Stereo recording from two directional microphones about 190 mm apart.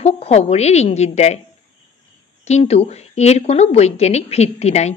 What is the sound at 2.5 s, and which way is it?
A woman's voice, 35° left (ahead or behind).